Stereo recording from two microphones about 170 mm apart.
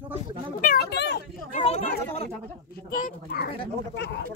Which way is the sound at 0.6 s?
65° left (ahead or behind).